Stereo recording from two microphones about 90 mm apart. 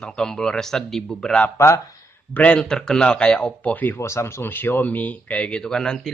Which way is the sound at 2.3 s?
15° left (ahead or behind).